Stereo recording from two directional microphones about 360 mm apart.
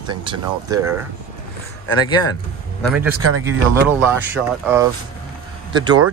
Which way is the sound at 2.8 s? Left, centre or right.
Centre.